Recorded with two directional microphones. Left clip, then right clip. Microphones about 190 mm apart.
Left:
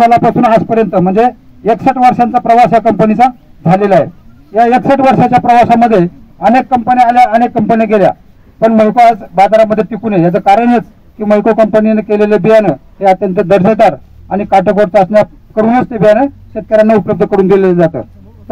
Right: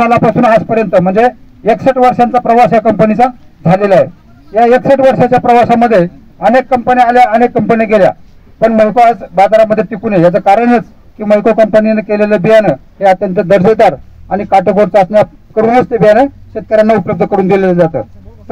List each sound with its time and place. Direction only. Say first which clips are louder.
0.2 s a man's voice: even; 40° right (ahead or behind)
6.7 s a man's voice: even; 40° right (ahead or behind); by 18.0 s 55° right (ahead or behind)